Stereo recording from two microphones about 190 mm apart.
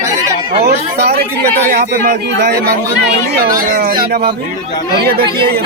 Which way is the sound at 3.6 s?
50° right (ahead or behind).